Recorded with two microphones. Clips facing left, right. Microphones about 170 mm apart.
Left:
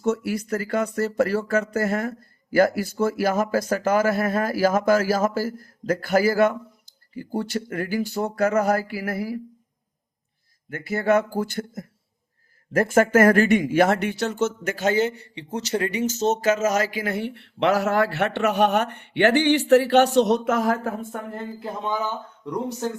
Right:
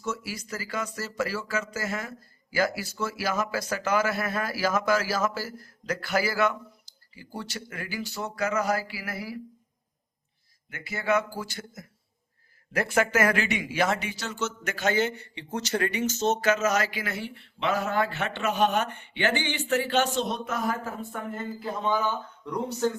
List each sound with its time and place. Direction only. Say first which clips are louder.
0.0 s speech: left 10 dB; 60° left (ahead or behind)
10.7 s speech: left 6 dB; 50° left (ahead or behind); by 20.9 s 90° left
21.0 s speech: left 2 dB; 45° left (ahead or behind)